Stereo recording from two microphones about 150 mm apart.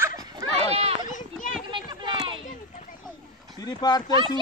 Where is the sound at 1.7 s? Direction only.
30° right (ahead or behind).